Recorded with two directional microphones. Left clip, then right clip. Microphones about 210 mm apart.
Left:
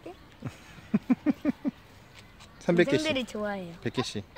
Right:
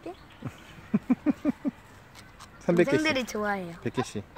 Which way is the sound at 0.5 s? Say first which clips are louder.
Even; 5° left (ahead or behind).